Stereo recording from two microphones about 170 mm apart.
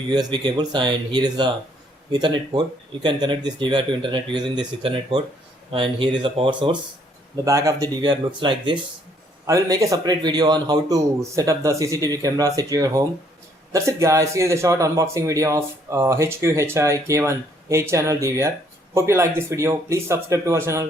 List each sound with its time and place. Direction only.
0.1 s speech: 25° right (ahead or behind)